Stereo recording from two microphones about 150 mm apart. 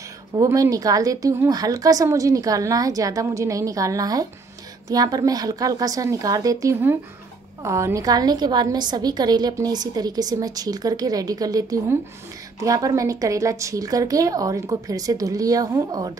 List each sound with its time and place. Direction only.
0.4 s a woman's voice: 25° right (ahead or behind)